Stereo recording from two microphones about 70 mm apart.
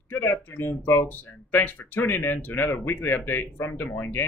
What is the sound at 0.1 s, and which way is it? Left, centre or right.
Speech, left.